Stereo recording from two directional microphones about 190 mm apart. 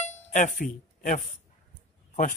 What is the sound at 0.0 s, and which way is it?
Music, 40° left (ahead or behind).